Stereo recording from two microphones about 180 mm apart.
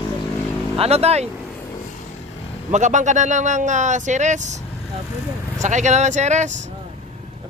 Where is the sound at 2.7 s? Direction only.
40° right (ahead or behind).